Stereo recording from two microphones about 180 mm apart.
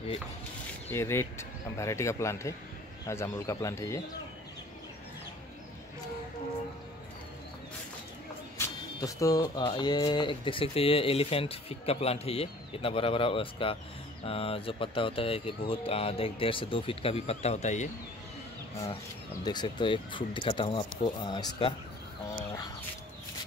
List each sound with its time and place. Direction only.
0.8 s speech: 15° left (ahead or behind)
8.5 s music: 20° left (ahead or behind)
9.7 s speech: 25° left (ahead or behind); by 17.8 s 40° left (ahead or behind)
19.4 s speech: 25° left (ahead or behind)